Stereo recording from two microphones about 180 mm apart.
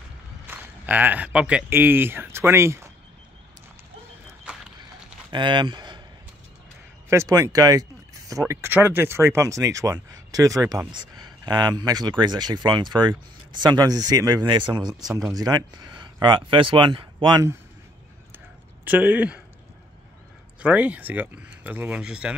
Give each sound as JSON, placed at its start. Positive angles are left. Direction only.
{"t": 0.5, "sound": "speech", "side_deg": -10}
{"t": 5.3, "sound": "speech", "side_deg": -25}
{"t": 7.1, "sound": "speech", "side_deg": -15}
{"t": 18.9, "sound": "speech", "side_deg": -10}
{"t": 20.6, "sound": "speech", "side_deg": -10}